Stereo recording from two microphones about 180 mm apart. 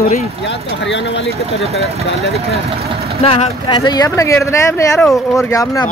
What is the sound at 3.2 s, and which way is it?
Speech, 35° left (ahead or behind).